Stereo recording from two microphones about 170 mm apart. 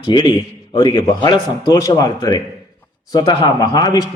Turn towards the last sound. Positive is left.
turn(degrees=25)  # may be behind; listen again after turning